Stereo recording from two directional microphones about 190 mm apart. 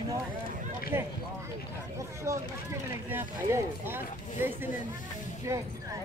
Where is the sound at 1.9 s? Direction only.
15° right (ahead or behind).